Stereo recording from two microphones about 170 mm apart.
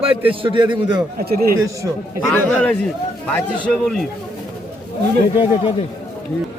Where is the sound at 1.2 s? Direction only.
60° right (ahead or behind).